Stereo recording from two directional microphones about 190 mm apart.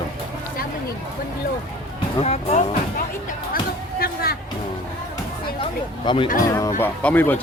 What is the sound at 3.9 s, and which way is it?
Speech, 55° left (ahead or behind).